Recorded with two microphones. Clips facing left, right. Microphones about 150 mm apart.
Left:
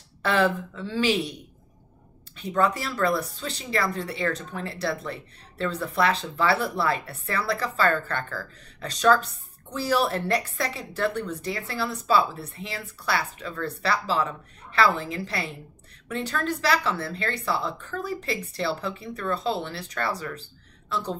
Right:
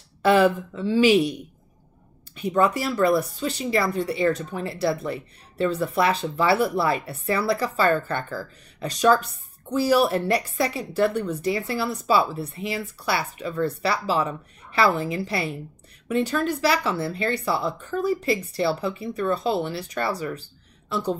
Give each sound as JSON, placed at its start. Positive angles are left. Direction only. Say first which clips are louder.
{"t": 0.2, "sound": "speech", "louder": "right 5 dB", "side_deg": -10}
{"t": 2.3, "sound": "speech", "louder": "right 3 dB", "side_deg": -10}